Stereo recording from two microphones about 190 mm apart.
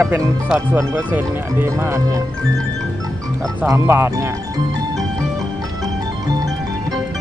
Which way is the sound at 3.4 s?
15° right (ahead or behind).